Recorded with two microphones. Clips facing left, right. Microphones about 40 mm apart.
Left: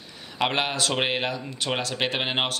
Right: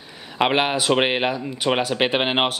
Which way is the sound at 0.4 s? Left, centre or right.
Right.